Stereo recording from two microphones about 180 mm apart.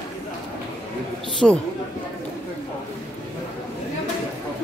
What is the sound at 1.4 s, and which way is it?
Speech, centre (ahead or behind).